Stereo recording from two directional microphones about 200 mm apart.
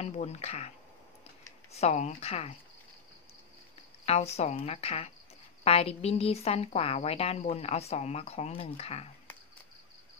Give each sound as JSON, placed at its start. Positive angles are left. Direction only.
{"t": 0.0, "sound": "speech", "side_deg": 35}
{"t": 4.0, "sound": "speech", "side_deg": 30}